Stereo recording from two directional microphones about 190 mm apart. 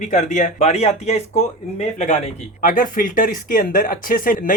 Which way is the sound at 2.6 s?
45° left (ahead or behind).